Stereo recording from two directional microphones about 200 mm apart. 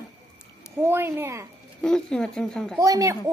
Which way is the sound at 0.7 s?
10° right (ahead or behind).